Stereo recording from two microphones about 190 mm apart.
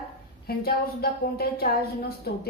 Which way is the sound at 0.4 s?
55° left (ahead or behind).